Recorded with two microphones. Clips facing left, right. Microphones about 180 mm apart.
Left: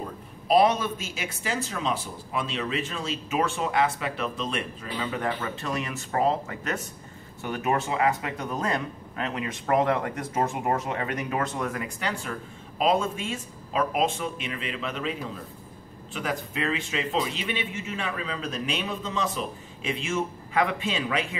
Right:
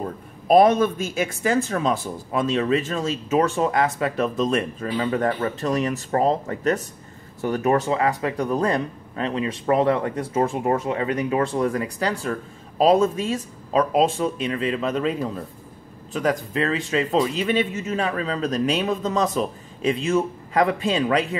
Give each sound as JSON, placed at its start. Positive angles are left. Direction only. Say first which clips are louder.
{"t": 0.5, "sound": "speech", "louder": "right 6 dB", "side_deg": -50}